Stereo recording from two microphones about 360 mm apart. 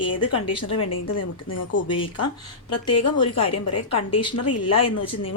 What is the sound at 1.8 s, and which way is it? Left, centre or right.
Speech, centre.